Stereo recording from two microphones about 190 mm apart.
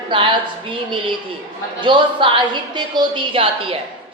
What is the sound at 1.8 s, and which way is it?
Speech, 25° right (ahead or behind).